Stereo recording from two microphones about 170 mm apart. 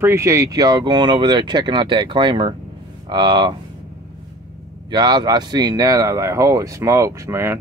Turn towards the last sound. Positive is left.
turn(degrees=-15)  # may be behind; listen again after turning